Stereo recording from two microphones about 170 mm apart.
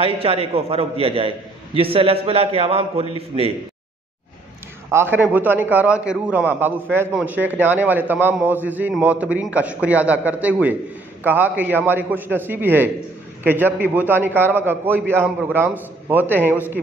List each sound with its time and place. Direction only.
0.0 s a man's voice: 35° right (ahead or behind)
4.9 s a man's voice: 10° right (ahead or behind)